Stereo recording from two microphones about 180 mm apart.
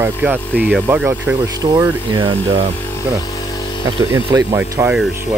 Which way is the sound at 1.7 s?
25° right (ahead or behind).